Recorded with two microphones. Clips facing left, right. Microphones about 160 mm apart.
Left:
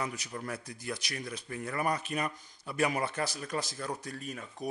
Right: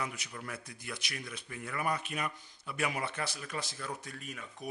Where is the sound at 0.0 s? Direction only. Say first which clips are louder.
Left 3 dB; 40° left (ahead or behind).